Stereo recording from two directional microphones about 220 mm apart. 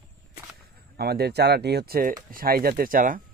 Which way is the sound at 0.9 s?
45° right (ahead or behind).